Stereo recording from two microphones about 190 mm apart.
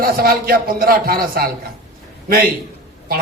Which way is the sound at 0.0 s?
50° right (ahead or behind).